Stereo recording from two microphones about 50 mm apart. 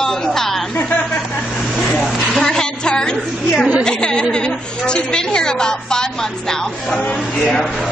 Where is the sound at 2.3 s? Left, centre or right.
Centre.